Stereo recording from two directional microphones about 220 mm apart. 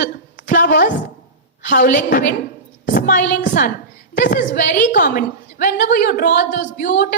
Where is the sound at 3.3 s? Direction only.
35° left (ahead or behind).